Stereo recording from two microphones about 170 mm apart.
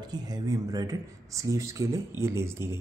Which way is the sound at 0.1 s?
20° right (ahead or behind).